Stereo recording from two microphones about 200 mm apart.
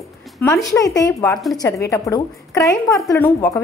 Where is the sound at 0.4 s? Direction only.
15° left (ahead or behind).